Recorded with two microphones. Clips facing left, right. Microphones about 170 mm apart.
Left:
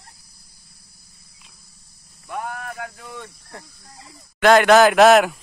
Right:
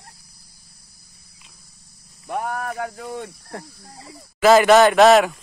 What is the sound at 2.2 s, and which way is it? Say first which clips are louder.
Speech: right 4 dB; 45° right (ahead or behind).